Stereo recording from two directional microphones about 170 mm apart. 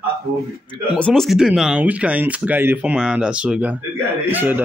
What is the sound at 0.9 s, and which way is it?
A man's voice, 5° left (ahead or behind).